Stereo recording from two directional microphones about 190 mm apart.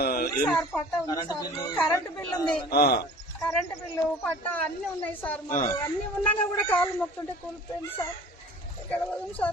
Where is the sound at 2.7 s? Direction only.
55° left (ahead or behind).